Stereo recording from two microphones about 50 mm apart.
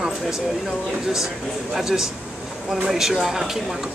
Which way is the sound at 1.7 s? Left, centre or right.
Centre.